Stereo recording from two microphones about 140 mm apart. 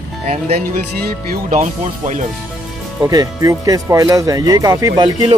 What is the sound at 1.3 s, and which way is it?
Speech, 70° right (ahead or behind).